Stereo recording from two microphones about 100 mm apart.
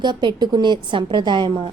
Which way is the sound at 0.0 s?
50° right (ahead or behind).